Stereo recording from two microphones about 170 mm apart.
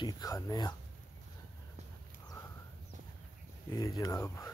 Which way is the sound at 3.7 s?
20° left (ahead or behind).